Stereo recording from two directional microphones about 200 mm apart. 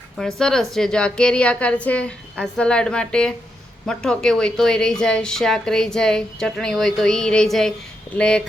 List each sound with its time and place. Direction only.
0.2 s a woman's voice: 5° left (ahead or behind)